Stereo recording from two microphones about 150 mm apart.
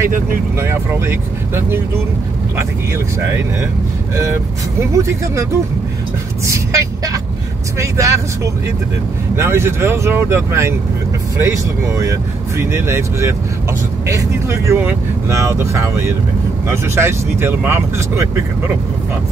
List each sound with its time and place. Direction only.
0.6 s speech: 15° right (ahead or behind)
4.2 s speech: 20° right (ahead or behind)
9.4 s speech: 15° right (ahead or behind)